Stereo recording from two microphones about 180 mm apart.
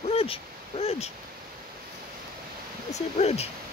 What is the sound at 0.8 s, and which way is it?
Speech, 35° left (ahead or behind).